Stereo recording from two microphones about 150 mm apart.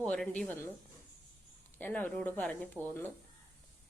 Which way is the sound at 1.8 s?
10° left (ahead or behind).